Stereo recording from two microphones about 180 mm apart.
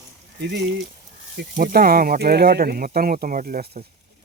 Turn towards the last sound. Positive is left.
turn(degrees=-60)  # may be behind; listen again after turning